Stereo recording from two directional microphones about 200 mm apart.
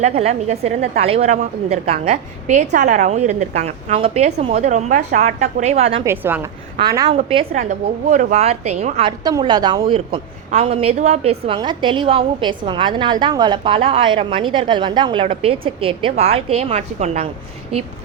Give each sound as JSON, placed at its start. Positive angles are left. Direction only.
{"t": 0.2, "sound": "a woman's voice", "side_deg": -30}
{"t": 6.1, "sound": "a woman's voice", "side_deg": -10}
{"t": 7.2, "sound": "a woman's voice", "side_deg": -30}
{"t": 9.2, "sound": "a woman's voice", "side_deg": -20}